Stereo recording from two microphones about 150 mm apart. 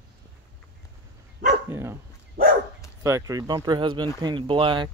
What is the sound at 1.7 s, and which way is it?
Speech, 15° right (ahead or behind).